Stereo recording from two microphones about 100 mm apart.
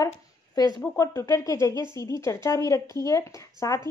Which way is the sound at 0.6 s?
40° left (ahead or behind).